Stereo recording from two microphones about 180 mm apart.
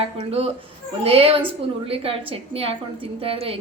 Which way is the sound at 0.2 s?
35° right (ahead or behind).